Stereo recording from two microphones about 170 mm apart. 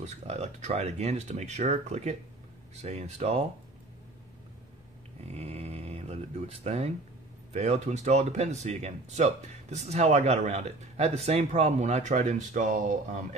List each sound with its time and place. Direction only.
0.0 s speech: 40° right (ahead or behind)
5.3 s speech: 40° right (ahead or behind)